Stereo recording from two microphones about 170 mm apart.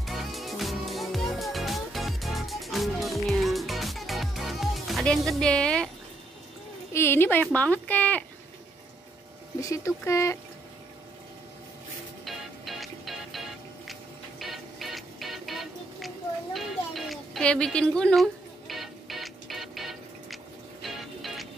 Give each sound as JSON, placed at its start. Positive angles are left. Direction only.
{"t": 0.0, "sound": "music", "side_deg": 0}
{"t": 6.9, "sound": "speech", "side_deg": 15}
{"t": 9.6, "sound": "speech", "side_deg": 20}
{"t": 12.3, "sound": "music", "side_deg": 0}
{"t": 16.5, "sound": "a sound", "side_deg": 0}
{"t": 20.8, "sound": "music", "side_deg": 0}